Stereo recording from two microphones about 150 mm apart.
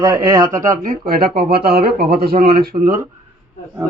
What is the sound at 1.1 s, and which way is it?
Speech, 85° right.